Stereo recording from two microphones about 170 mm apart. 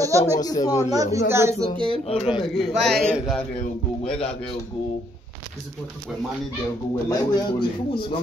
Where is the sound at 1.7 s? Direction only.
30° right (ahead or behind).